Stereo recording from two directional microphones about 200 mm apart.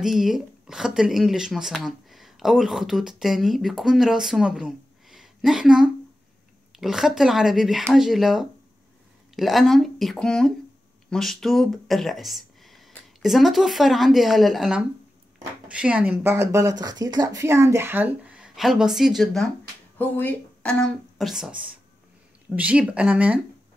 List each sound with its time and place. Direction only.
0.0 s speech: centre (ahead or behind)